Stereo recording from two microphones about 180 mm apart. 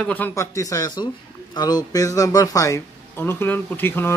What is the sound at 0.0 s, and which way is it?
A man's voice, 10° left (ahead or behind).